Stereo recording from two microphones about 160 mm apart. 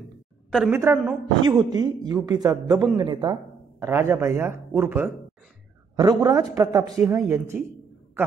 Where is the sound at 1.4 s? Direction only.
30° right (ahead or behind).